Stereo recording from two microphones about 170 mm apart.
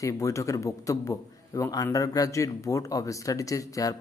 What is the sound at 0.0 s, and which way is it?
A man's voice, 20° left (ahead or behind).